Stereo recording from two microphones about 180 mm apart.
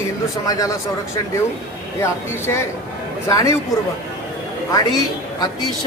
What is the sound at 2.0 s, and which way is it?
Speech, 15° left (ahead or behind).